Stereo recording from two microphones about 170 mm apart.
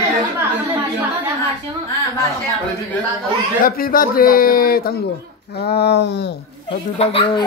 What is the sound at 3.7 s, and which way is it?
A man's voice, 60° left (ahead or behind).